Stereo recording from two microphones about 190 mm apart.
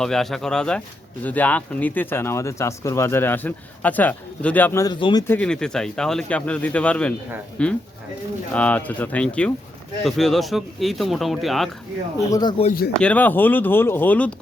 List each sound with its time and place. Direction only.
0.0 s speech: centre (ahead or behind); by 5.2 s 25° left (ahead or behind)
5.3 s speech: 5° left (ahead or behind)
12.3 s speech: 20° left (ahead or behind)
13.0 s speech: 10° left (ahead or behind)